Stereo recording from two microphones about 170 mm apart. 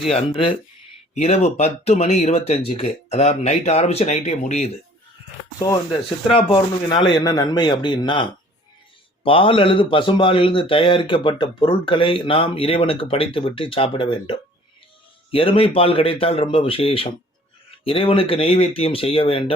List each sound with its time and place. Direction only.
1.1 s a man's voice: 40° left (ahead or behind)
5.5 s speech: 20° left (ahead or behind)
6.1 s a man's voice: 30° left (ahead or behind)